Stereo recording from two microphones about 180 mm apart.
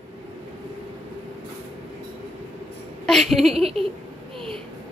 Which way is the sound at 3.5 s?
35° right (ahead or behind).